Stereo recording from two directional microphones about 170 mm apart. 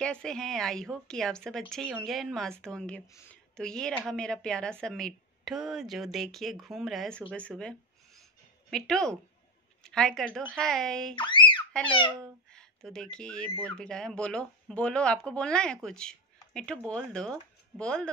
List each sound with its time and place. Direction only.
0.0 s speech: 5° left (ahead or behind)
3.1 s speech: 15° left (ahead or behind)
3.5 s speech: 5° left (ahead or behind)
7.5 s a sound: 5° left (ahead or behind)
9.8 s speech: 5° left (ahead or behind)
11.1 s a sound: 30° left (ahead or behind)
12.4 s speech: 5° left (ahead or behind)